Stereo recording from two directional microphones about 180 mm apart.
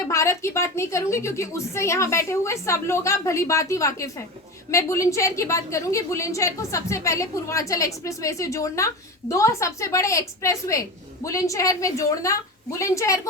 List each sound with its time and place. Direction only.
0.1 s a woman's voice: 15° left (ahead or behind)